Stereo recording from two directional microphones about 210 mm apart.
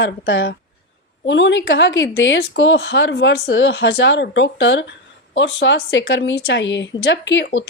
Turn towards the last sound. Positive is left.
turn(degrees=60)  # may be behind; listen again after turning